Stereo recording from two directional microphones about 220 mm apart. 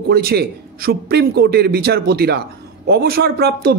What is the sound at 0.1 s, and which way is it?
A man's voice, 45° right (ahead or behind).